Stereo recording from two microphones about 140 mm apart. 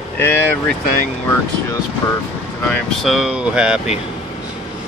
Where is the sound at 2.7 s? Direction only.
Centre (ahead or behind).